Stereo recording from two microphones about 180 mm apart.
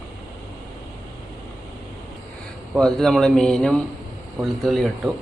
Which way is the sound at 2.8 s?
5° left (ahead or behind).